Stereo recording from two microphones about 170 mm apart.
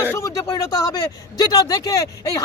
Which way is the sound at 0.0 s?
15° left (ahead or behind).